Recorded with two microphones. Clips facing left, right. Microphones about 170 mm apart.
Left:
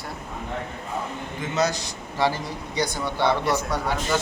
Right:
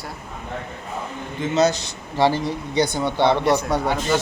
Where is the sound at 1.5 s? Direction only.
25° right (ahead or behind).